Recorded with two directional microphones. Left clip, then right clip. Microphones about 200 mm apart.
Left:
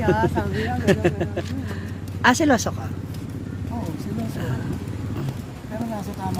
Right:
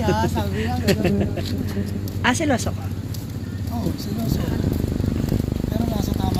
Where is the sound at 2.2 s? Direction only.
30° left (ahead or behind).